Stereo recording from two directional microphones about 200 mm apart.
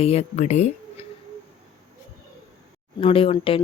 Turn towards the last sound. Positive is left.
turn(degrees=25)  # may be behind; listen again after turning